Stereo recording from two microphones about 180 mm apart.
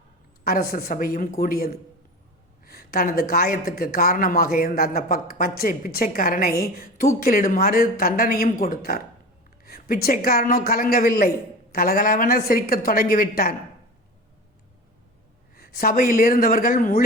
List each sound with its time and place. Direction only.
0.4 s speech: 55° left (ahead or behind)
15.5 s speech: 55° left (ahead or behind)